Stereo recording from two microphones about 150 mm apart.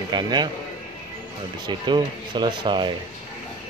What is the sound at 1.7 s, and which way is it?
Speech, 30° right (ahead or behind).